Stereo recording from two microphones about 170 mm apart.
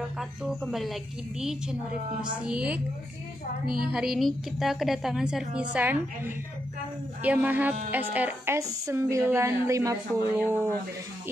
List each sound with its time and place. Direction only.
0.2 s music: centre (ahead or behind)
1.4 s a woman's voice: 5° right (ahead or behind)
3.8 s a woman's voice: 5° right (ahead or behind)